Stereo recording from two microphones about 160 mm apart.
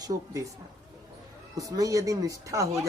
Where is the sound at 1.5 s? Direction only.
20° right (ahead or behind).